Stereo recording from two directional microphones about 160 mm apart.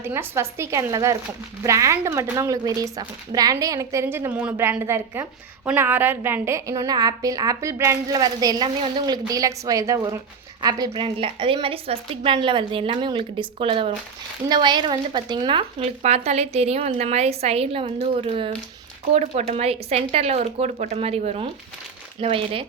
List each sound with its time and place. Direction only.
0.0 s a woman's voice: 15° right (ahead or behind); by 15.6 s 30° right (ahead or behind)
15.8 s a woman's voice: 40° right (ahead or behind)